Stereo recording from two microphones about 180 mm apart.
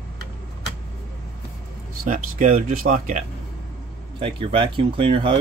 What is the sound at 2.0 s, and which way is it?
Speech, 45° right (ahead or behind).